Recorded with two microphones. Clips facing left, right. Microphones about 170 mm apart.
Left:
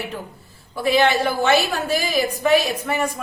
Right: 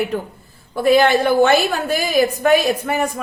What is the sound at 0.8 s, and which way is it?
A woman's voice, 50° right (ahead or behind).